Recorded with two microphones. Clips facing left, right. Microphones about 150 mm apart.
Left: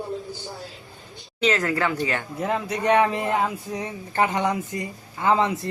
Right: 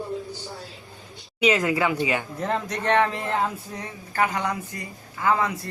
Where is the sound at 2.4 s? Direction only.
10° left (ahead or behind).